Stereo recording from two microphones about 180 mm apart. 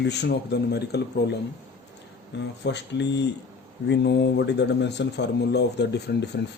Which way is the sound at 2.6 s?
75° left (ahead or behind).